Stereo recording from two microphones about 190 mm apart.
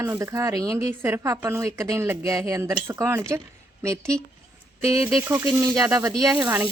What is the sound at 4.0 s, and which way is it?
Speech, 5° left (ahead or behind).